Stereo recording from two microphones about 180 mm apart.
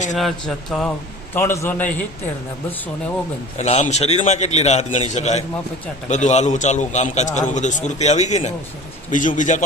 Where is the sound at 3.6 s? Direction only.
40° left (ahead or behind).